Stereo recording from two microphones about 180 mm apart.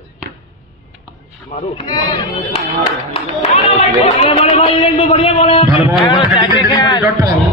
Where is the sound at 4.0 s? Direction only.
35° left (ahead or behind).